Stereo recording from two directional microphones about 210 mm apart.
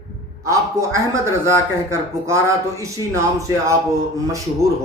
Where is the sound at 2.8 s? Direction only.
15° right (ahead or behind).